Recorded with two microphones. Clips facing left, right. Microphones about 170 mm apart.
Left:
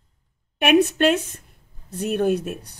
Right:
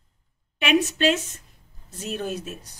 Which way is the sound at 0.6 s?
60° left (ahead or behind).